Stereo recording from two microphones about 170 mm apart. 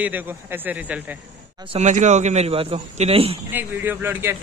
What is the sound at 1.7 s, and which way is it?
A man's voice, 45° right (ahead or behind).